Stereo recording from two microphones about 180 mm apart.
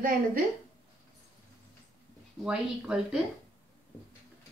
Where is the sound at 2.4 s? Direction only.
5° right (ahead or behind).